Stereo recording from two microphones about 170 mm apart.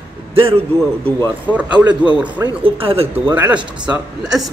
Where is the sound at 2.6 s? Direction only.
35° right (ahead or behind).